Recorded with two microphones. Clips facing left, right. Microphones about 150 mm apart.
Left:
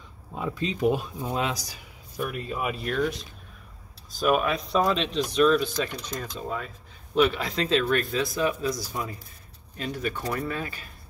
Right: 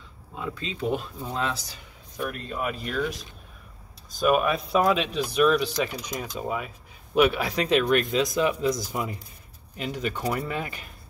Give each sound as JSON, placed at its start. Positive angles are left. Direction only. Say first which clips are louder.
{"t": 0.4, "sound": "speech", "louder": "left 5 dB", "side_deg": 15}